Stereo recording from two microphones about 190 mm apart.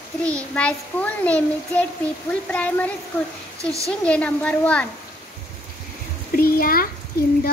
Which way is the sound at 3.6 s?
15° right (ahead or behind).